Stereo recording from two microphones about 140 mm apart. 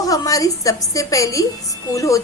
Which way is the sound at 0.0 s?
25° left (ahead or behind).